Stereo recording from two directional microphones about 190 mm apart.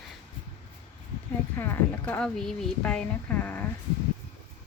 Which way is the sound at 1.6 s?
10° left (ahead or behind).